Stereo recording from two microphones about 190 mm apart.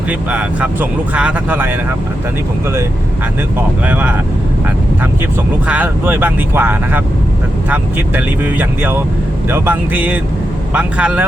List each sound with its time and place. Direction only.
0.1 s speech: 5° right (ahead or behind)
3.8 s speech: 5° right (ahead or behind)
5.6 s speech: 10° right (ahead or behind)